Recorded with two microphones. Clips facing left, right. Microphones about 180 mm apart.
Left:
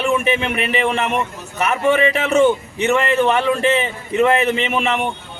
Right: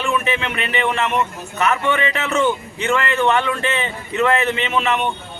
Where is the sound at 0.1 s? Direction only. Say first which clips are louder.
Left 3 dB; 25° left (ahead or behind).